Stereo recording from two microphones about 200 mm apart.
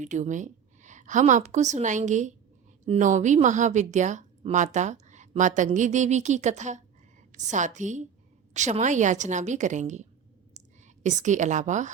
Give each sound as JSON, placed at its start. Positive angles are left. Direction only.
{"t": 0.0, "sound": "a woman's voice", "side_deg": -35}